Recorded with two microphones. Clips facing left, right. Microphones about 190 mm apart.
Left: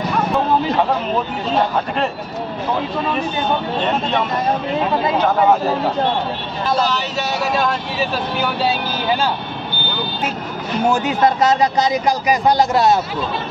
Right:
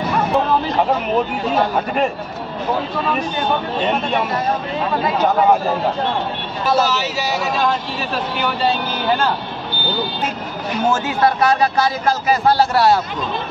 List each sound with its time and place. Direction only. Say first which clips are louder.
6.8 s speech: right 1 dB; 5° right (ahead or behind)
10.9 s a man's voice: left 1 dB; 20° left (ahead or behind)